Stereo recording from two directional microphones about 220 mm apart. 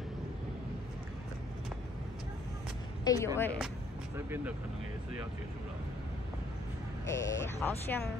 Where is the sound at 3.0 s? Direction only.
15° left (ahead or behind).